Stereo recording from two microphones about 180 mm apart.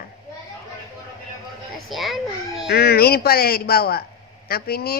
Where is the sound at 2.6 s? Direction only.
65° left (ahead or behind).